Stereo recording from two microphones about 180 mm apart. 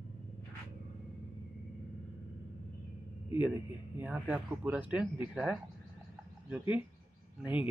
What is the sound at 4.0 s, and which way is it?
Speech, 10° right (ahead or behind).